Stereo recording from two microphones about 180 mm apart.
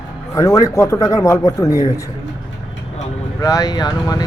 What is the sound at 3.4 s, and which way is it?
Speech, 20° left (ahead or behind).